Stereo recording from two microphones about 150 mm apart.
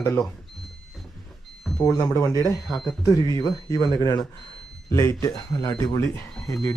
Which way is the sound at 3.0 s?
25° left (ahead or behind).